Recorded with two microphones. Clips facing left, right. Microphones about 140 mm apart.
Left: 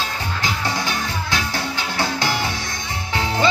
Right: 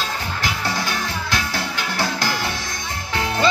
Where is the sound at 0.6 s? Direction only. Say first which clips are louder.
Even; 20° left (ahead or behind).